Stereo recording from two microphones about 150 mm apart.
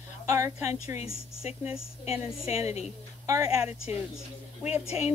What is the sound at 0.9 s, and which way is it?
A woman's voice, 45° left (ahead or behind).